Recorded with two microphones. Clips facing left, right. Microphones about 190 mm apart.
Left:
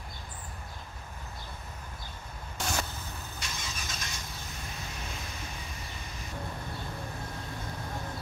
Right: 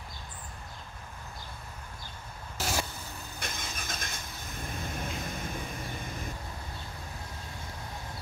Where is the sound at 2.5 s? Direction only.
5° right (ahead or behind).